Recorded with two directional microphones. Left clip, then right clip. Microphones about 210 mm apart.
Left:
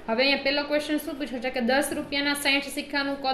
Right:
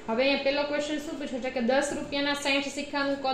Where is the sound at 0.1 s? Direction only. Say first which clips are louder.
Left 2 dB; 55° left (ahead or behind).